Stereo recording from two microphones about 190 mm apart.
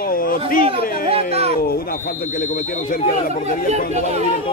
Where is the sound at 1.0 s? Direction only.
30° right (ahead or behind).